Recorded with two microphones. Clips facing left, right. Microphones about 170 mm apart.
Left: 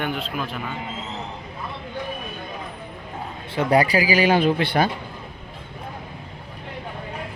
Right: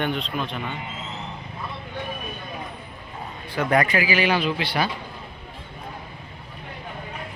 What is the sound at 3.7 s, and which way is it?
Speech, 35° left (ahead or behind).